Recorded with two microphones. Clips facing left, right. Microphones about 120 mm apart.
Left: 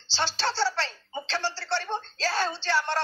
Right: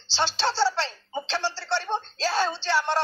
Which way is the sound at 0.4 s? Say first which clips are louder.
Right 3 dB; 15° right (ahead or behind).